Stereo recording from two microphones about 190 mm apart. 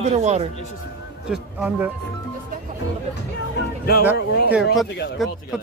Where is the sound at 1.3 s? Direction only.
10° right (ahead or behind).